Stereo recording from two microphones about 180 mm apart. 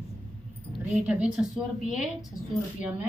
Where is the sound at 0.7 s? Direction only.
5° right (ahead or behind).